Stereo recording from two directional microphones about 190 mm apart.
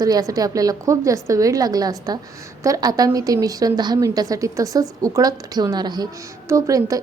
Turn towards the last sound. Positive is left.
turn(degrees=-15)  # may be behind; listen again after turning